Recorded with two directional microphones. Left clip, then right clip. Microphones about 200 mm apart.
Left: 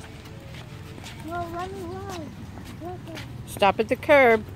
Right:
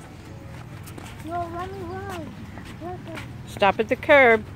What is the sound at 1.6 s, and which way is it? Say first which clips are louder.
A woman's voice: right 1 dB; centre (ahead or behind).